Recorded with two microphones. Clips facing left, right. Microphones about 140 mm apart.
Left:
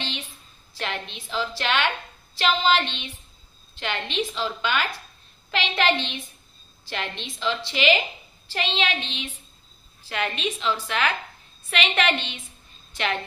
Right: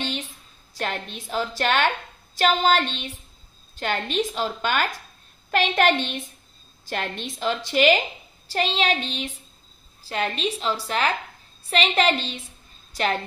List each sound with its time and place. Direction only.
0.7 s a woman's voice: 45° right (ahead or behind)